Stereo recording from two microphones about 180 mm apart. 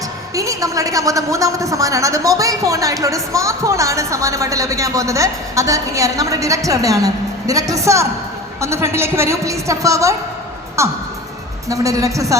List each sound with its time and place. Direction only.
0.3 s a woman's voice: 20° right (ahead or behind)